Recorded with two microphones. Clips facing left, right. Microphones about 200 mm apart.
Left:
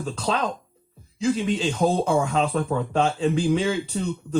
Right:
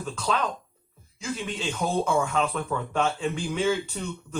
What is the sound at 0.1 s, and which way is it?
Speech, 35° left (ahead or behind).